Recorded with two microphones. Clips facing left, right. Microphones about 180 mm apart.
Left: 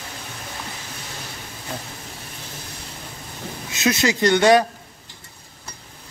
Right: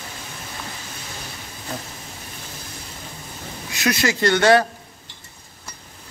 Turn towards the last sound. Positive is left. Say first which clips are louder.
# left 1 dB
turn(degrees=15)  # may be behind; listen again after turning